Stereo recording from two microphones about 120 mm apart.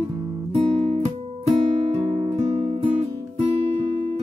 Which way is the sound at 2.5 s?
60° right (ahead or behind).